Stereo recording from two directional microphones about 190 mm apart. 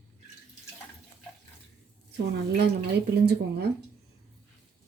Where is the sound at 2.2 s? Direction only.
60° right (ahead or behind).